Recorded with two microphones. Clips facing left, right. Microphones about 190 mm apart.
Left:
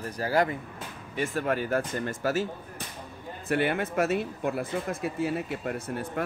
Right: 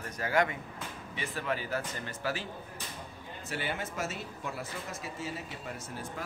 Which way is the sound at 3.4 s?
60° left (ahead or behind).